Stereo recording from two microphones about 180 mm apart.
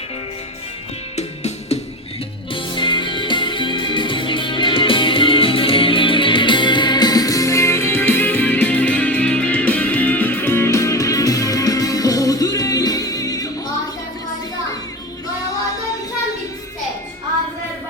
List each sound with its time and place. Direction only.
1.1 s music: 40° left (ahead or behind)
2.5 s music: 25° left (ahead or behind)